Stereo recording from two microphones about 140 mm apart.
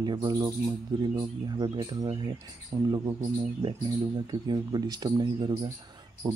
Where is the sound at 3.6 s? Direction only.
35° right (ahead or behind).